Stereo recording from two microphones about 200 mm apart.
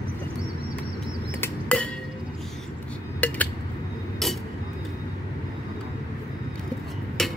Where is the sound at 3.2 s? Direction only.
5° left (ahead or behind).